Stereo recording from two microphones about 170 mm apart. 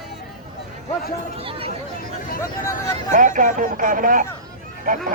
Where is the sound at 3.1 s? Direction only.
50° right (ahead or behind).